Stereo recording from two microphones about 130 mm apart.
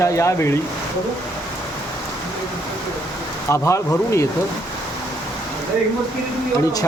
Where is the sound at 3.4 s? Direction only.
20° left (ahead or behind).